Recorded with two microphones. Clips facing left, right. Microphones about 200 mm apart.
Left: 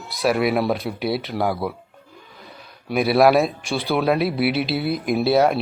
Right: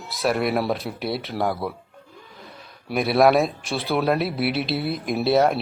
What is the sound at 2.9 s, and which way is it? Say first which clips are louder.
A man's voice: left 2 dB; centre (ahead or behind).